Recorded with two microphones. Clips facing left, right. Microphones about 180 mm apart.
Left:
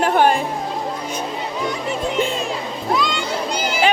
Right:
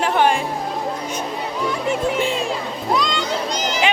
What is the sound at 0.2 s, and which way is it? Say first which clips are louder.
Music: left 1 dB; 40° left (ahead or behind).